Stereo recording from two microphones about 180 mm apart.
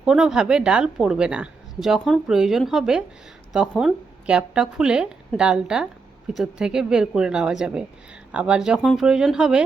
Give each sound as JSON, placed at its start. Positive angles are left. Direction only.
{"t": 0.0, "sound": "a woman's voice", "side_deg": -5}